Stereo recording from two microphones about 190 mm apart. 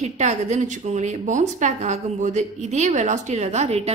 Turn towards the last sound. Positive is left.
turn(degrees=-35)  # may be behind; listen again after turning